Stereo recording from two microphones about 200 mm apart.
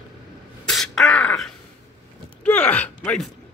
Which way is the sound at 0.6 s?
Centre (ahead or behind).